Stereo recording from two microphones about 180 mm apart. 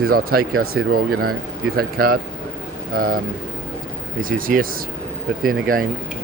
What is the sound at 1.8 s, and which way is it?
A man's voice, 55° right (ahead or behind).